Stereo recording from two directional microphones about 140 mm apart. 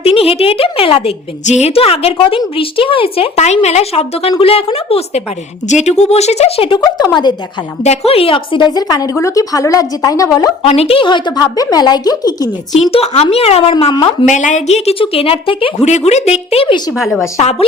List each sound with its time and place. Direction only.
0.0 s a woman's voice: 45° left (ahead or behind)
7.9 s a woman's voice: 45° left (ahead or behind); by 10.5 s 25° left (ahead or behind)
10.6 s a woman's voice: 45° left (ahead or behind); by 12.5 s 25° left (ahead or behind)
12.7 s a woman's voice: 50° left (ahead or behind)
13.9 s a woman's voice: 35° left (ahead or behind)
14.3 s a woman's voice: 60° left (ahead or behind); by 15.9 s 40° left (ahead or behind)
15.9 s a woman's voice: 55° left (ahead or behind)